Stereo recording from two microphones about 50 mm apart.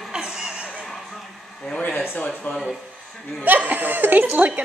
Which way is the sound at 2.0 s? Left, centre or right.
Left.